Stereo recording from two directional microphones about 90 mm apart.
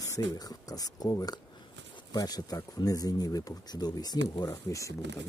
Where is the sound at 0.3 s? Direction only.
45° left (ahead or behind).